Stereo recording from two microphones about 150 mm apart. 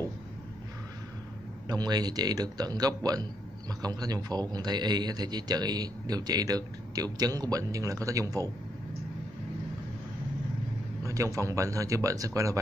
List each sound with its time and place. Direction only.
1.7 s a man's voice: 25° right (ahead or behind)
11.1 s a man's voice: 20° right (ahead or behind)